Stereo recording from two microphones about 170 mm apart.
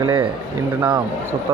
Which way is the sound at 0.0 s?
30° right (ahead or behind).